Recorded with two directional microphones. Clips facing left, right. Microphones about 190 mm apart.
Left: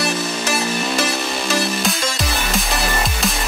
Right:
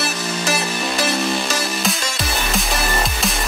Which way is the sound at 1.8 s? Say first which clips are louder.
Left 2 dB; centre (ahead or behind).